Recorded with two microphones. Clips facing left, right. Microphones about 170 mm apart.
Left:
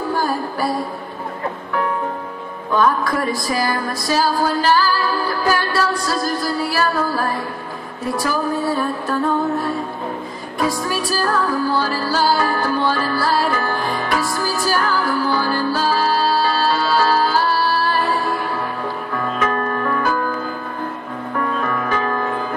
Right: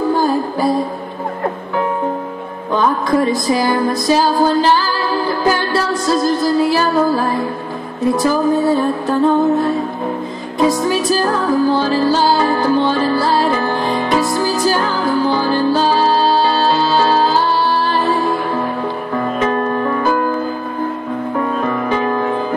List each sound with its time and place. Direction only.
0.1 s music: 20° right (ahead or behind)
2.7 s music: 20° right (ahead or behind)
10.6 s music: 20° right (ahead or behind)
19.1 s music: 25° right (ahead or behind)
21.4 s music: 25° right (ahead or behind)